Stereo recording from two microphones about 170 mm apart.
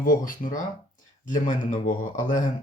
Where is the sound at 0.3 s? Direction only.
55° left (ahead or behind).